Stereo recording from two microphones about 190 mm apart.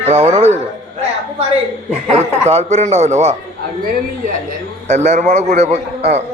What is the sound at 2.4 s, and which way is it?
Speech, 35° right (ahead or behind).